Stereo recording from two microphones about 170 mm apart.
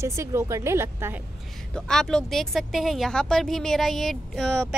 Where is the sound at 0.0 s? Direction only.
15° right (ahead or behind).